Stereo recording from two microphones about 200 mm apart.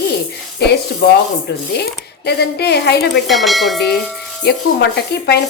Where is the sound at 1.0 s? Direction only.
55° left (ahead or behind).